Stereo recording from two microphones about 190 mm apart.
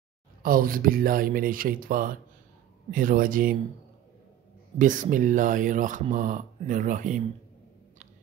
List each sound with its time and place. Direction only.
0.4 s speech: 50° right (ahead or behind)
4.7 s speech: 40° right (ahead or behind)